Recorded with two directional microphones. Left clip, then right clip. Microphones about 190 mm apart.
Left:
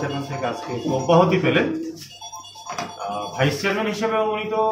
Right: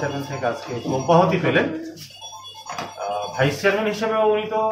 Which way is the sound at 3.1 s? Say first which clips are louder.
Right 1 dB; 5° left (ahead or behind).